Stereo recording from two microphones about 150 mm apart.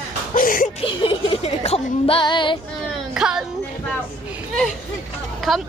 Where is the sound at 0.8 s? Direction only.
35° left (ahead or behind).